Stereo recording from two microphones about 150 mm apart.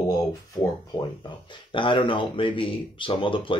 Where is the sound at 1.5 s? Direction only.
35° left (ahead or behind).